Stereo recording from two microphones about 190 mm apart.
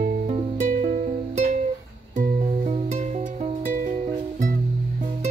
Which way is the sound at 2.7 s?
35° right (ahead or behind).